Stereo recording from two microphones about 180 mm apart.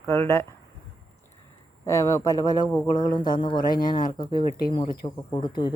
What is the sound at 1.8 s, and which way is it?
Speech, 15° left (ahead or behind).